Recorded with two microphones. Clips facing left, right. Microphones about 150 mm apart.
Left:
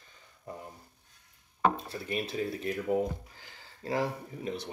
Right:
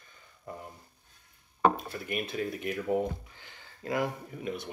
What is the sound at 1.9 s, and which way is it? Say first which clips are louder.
Speech: even; 30° left (ahead or behind).